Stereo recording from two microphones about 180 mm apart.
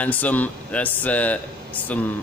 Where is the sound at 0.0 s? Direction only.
10° left (ahead or behind).